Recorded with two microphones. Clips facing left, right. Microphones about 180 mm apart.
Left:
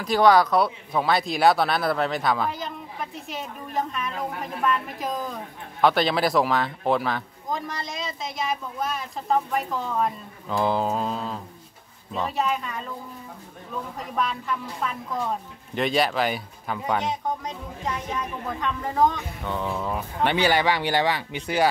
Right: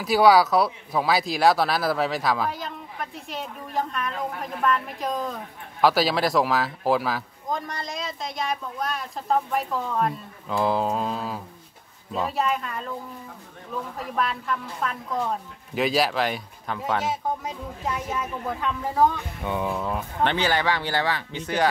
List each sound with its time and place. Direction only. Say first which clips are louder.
0.0 s a woman's voice: right 1 dB; 5° right (ahead or behind)
13.9 s a woman's voice: even; centre (ahead or behind)
19.7 s a woman's voice: even; centre (ahead or behind)
20.2 s speech: left 3 dB; 15° left (ahead or behind)